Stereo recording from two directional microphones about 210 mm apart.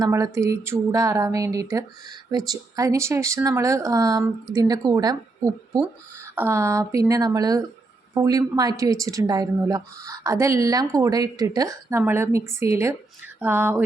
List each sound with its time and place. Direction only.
0.0 s speech: 15° right (ahead or behind)